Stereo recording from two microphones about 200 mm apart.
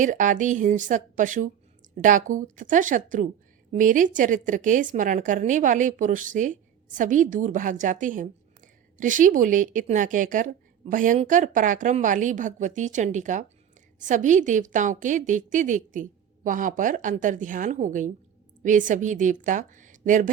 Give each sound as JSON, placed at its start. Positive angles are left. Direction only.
{"t": 0.0, "sound": "speech", "side_deg": -40}